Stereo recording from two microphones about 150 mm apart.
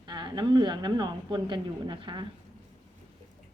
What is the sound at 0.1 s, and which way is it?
A woman's voice, 30° right (ahead or behind).